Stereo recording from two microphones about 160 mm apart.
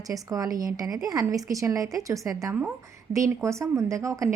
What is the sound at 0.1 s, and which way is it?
A woman's voice, 20° right (ahead or behind).